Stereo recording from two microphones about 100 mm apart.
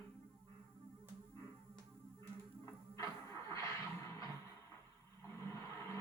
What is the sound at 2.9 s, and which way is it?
Music, 30° left (ahead or behind).